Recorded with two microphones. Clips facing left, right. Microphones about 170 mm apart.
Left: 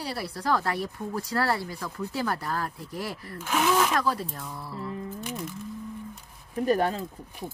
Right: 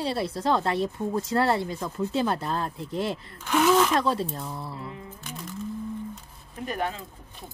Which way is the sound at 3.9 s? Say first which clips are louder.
Right 3 dB; 25° right (ahead or behind).